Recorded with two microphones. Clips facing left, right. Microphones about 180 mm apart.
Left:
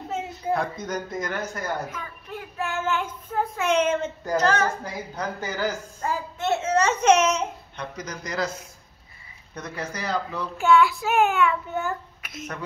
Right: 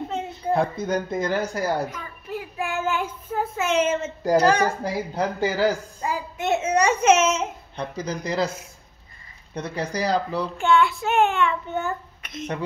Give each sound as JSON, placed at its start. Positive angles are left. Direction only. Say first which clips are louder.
{"t": 0.5, "sound": "speech", "louder": "right 4 dB", "side_deg": -30}
{"t": 1.9, "sound": "child singing", "louder": "right 3 dB", "side_deg": 0}
{"t": 4.4, "sound": "a child's voice", "louder": "right 3 dB", "side_deg": -10}
{"t": 4.8, "sound": "speech", "louder": "right 6 dB", "side_deg": -30}
{"t": 5.9, "sound": "a child's voice", "louder": "right 1 dB", "side_deg": -10}
{"t": 7.7, "sound": "speech", "louder": "right 5 dB", "side_deg": -30}
{"t": 10.6, "sound": "a child's voice", "louder": "left 2 dB", "side_deg": 0}